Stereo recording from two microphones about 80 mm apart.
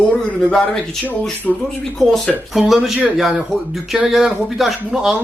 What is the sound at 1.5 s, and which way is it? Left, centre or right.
Speech, centre.